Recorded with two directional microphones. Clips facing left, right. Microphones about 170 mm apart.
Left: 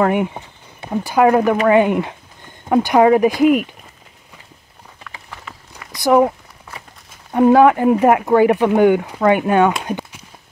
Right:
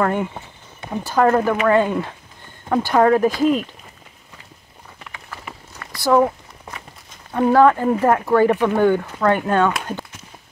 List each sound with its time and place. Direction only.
0.0 s speech: 15° left (ahead or behind)
5.8 s a sound: 15° left (ahead or behind)
7.3 s speech: 15° left (ahead or behind)
9.8 s walk: 15° left (ahead or behind)